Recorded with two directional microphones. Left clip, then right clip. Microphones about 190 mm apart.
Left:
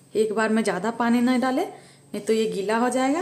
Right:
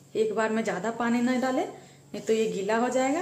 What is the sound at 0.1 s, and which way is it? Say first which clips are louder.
A woman's voice: left 4 dB; 20° left (ahead or behind).